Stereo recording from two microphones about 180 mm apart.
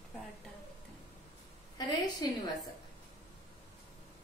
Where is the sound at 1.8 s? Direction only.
20° left (ahead or behind).